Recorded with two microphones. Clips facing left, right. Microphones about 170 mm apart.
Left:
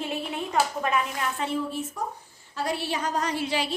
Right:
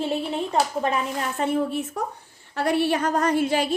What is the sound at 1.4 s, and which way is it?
A woman's voice, 55° right (ahead or behind).